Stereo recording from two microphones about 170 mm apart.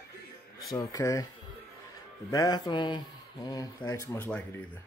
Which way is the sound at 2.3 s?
20° left (ahead or behind).